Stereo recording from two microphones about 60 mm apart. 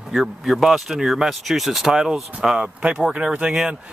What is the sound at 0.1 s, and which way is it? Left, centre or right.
Speech, centre.